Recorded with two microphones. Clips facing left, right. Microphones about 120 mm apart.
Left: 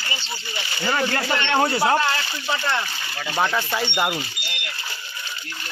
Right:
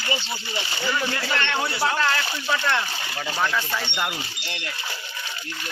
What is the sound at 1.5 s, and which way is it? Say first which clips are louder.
Speech: left 6 dB; 40° left (ahead or behind).